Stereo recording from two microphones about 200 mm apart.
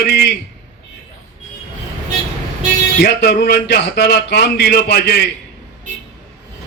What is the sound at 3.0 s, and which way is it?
A man's voice, 60° left (ahead or behind).